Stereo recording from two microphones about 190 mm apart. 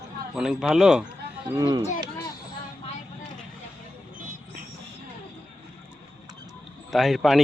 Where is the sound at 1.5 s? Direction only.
20° right (ahead or behind).